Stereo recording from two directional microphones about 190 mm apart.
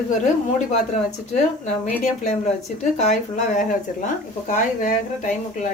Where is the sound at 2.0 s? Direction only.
35° left (ahead or behind).